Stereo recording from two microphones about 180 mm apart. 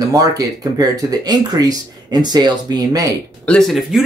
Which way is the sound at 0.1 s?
20° right (ahead or behind).